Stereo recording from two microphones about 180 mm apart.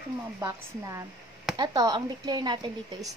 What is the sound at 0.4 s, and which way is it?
A woman's voice, 15° right (ahead or behind).